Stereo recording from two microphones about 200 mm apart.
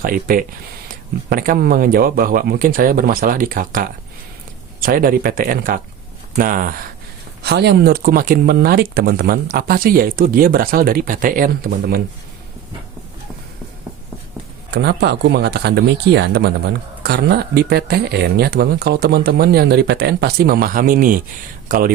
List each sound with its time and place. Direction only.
0.0 s speech: 45° right (ahead or behind)
7.4 s speech: 55° right (ahead or behind)
14.7 s speech: 55° right (ahead or behind)